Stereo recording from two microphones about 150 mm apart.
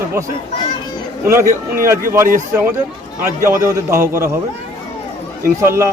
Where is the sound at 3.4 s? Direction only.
20° right (ahead or behind).